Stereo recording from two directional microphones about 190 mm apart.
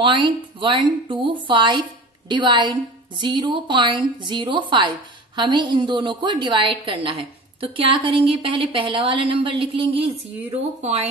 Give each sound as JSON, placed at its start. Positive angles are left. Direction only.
{"t": 0.0, "sound": "a woman's voice", "side_deg": -25}